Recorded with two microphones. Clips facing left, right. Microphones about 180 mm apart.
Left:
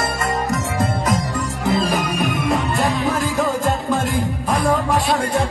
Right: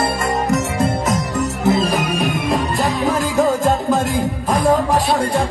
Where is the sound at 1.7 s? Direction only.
25° right (ahead or behind).